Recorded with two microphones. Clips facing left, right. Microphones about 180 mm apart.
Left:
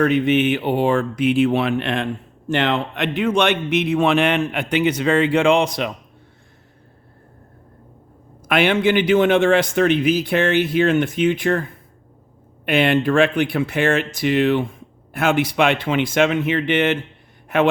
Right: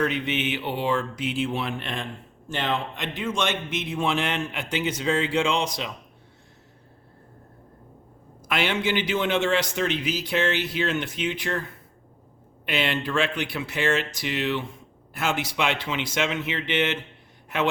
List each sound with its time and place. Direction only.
0.0 s speech: 55° left (ahead or behind)
8.4 s speech: 55° left (ahead or behind)
12.6 s speech: 55° left (ahead or behind)